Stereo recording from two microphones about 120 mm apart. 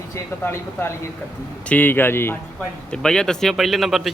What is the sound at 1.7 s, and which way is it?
Speech, 15° left (ahead or behind).